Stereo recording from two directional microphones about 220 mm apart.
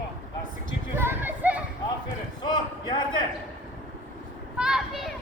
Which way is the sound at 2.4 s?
20° left (ahead or behind).